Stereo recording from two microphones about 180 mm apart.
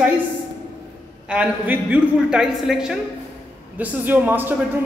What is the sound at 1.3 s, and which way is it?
A woman's voice, 10° right (ahead or behind).